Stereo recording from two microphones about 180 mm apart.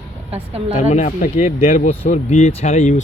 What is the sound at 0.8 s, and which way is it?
Speech, 40° left (ahead or behind).